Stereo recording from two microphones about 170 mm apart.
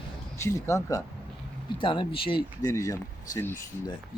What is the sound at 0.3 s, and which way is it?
Speech, 15° left (ahead or behind).